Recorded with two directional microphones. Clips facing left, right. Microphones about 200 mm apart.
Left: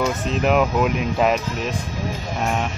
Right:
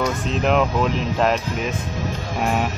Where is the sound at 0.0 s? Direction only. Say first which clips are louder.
Left 1 dB; centre (ahead or behind).